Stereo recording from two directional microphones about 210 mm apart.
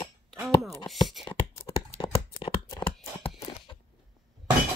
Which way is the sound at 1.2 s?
25° left (ahead or behind).